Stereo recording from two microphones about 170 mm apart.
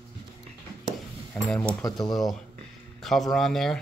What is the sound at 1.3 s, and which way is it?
Speech, 5° left (ahead or behind).